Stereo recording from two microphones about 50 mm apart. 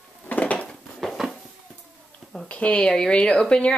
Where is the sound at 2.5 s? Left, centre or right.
Left.